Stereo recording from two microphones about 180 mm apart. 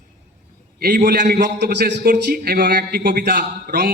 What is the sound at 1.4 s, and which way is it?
A man's voice, 65° right (ahead or behind).